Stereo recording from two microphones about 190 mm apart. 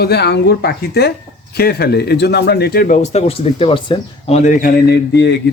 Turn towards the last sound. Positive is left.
turn(degrees=65)  # may be behind; listen again after turning